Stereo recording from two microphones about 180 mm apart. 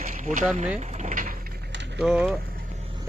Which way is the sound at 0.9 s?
45° right (ahead or behind).